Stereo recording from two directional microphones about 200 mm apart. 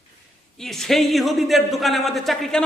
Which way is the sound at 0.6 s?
Centre (ahead or behind).